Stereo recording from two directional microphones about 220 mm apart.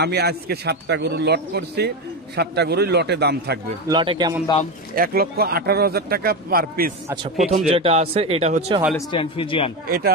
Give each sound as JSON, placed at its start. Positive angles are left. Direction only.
{"t": 0.0, "sound": "speech", "side_deg": -50}
{"t": 3.9, "sound": "a man's voice", "side_deg": -20}
{"t": 4.9, "sound": "speech", "side_deg": -40}
{"t": 7.7, "sound": "a man's voice", "side_deg": -25}
{"t": 8.9, "sound": "a man's voice", "side_deg": 25}
{"t": 9.8, "sound": "speech", "side_deg": -45}